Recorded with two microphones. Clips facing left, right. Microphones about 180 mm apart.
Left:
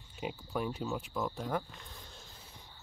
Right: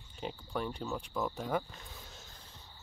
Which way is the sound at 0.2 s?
5° left (ahead or behind).